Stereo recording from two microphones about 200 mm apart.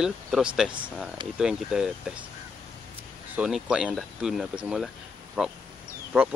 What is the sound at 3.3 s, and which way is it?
Speech, 5° right (ahead or behind).